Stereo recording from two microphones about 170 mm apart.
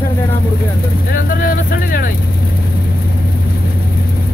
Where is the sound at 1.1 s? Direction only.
55° left (ahead or behind).